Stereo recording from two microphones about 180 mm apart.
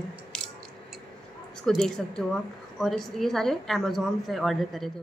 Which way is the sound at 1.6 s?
Centre (ahead or behind).